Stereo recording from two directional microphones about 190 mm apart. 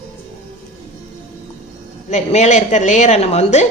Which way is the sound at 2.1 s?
35° left (ahead or behind).